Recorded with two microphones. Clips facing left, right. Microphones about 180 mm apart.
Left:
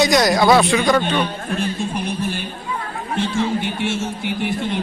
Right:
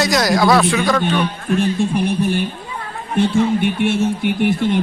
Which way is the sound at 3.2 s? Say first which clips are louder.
Right 6 dB; 60° right (ahead or behind).